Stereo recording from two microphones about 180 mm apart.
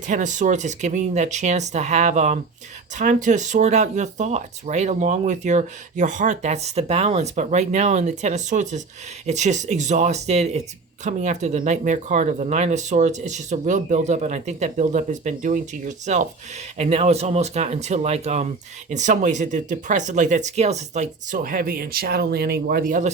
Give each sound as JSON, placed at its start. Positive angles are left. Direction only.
{"t": 0.1, "sound": "speech", "side_deg": -45}